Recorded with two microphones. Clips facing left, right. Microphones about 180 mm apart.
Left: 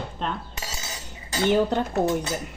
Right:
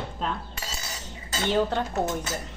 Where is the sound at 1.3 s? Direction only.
15° left (ahead or behind).